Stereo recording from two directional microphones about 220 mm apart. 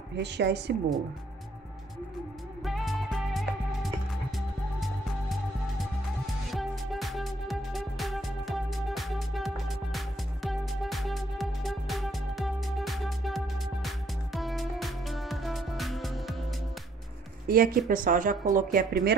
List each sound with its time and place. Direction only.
0.2 s a woman's voice: 50° right (ahead or behind)
2.6 s music: centre (ahead or behind)
6.5 s music: centre (ahead or behind)
17.5 s speech: 40° right (ahead or behind)